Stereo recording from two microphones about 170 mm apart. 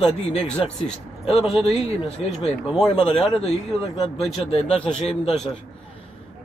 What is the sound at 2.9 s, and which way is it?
Speech, 30° left (ahead or behind).